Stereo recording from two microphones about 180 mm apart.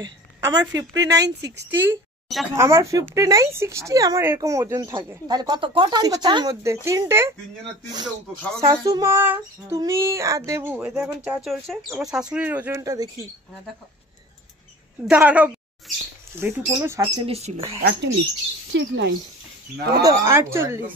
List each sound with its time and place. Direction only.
0.0 s speech: 25° right (ahead or behind)
8.6 s speech: 20° right (ahead or behind)
15.0 s speech: 10° right (ahead or behind)
17.3 s speech: 35° right (ahead or behind)
18.7 s speech: 85° right
20.0 s speech: 15° right (ahead or behind)